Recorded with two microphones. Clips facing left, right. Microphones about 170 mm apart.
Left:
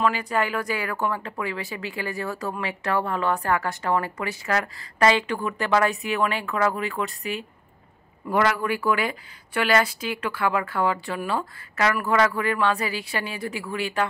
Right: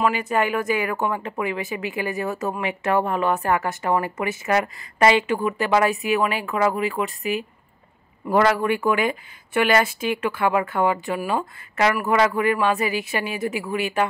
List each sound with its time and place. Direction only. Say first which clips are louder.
0.0 s speech: right 2 dB; 20° right (ahead or behind)
8.3 s speech: right 4 dB; 30° right (ahead or behind); by 14.0 s 15° right (ahead or behind)